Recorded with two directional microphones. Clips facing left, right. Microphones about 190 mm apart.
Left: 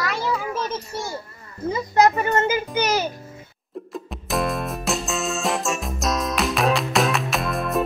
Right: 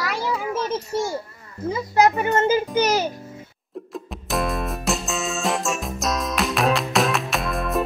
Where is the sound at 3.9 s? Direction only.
Centre (ahead or behind).